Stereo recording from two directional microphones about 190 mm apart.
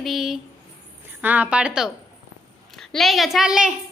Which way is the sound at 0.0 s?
Centre (ahead or behind).